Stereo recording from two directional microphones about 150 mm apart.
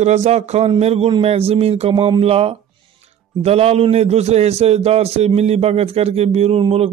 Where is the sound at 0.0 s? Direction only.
50° right (ahead or behind).